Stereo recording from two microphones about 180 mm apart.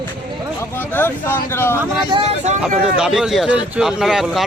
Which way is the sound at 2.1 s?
30° right (ahead or behind).